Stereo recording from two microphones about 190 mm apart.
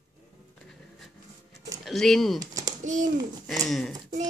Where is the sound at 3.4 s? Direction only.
Centre (ahead or behind).